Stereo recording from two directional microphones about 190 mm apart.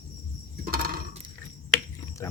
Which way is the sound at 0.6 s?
50° right (ahead or behind).